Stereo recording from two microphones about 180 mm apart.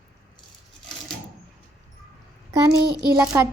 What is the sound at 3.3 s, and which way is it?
Speech, 15° right (ahead or behind).